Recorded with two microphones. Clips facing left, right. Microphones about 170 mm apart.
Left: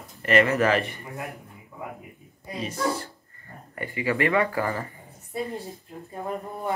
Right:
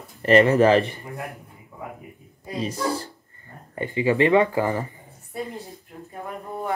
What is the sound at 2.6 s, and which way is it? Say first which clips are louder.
Speech: right 1 dB; 35° right (ahead or behind).